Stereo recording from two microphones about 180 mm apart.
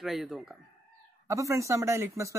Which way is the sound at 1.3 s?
15° right (ahead or behind).